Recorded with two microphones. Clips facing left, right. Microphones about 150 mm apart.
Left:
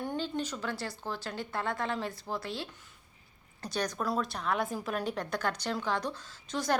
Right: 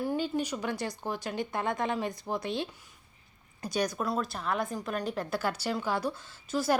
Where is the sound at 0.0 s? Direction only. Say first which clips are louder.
Right 4 dB; 10° right (ahead or behind).